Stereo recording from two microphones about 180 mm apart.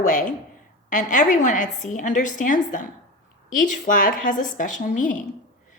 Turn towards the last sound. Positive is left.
turn(degrees=45)  # may be behind; listen again after turning